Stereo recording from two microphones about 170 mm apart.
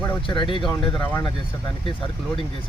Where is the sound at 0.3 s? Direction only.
30° left (ahead or behind).